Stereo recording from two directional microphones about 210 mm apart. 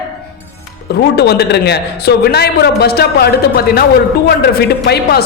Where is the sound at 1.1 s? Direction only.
50° left (ahead or behind).